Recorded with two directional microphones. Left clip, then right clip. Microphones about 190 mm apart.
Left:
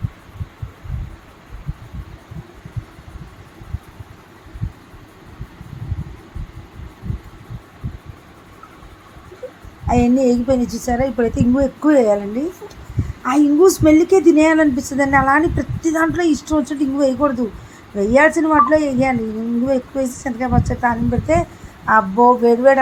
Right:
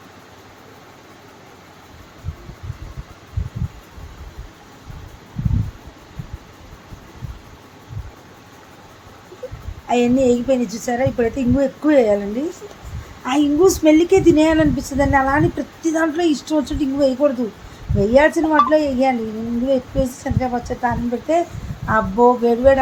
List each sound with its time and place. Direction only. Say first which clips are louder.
9.8 s a woman's voice: even; 15° left (ahead or behind)
13.2 s a woman's voice: left 2 dB; 15° left (ahead or behind)